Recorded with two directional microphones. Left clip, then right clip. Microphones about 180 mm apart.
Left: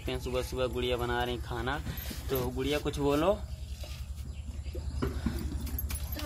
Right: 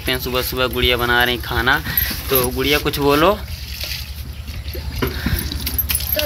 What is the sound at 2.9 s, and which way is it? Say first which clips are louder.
Speech: right 14 dB; 5° right (ahead or behind).